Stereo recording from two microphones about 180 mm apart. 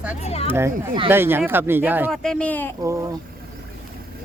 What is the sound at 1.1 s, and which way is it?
Speech, 10° right (ahead or behind).